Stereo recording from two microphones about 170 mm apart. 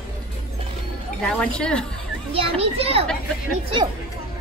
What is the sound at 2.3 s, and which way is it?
Speech, 35° right (ahead or behind).